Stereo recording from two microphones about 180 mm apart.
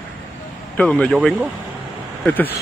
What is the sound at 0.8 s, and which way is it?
Speech, 5° left (ahead or behind).